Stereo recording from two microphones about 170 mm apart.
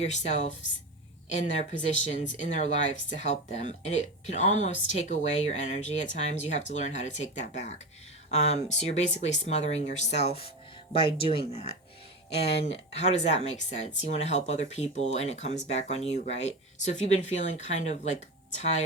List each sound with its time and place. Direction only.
0.0 s speech: 40° left (ahead or behind)
12.4 s speech: 35° left (ahead or behind)